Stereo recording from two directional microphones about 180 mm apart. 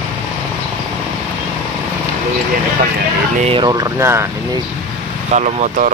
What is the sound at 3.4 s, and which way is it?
Speech, 30° right (ahead or behind).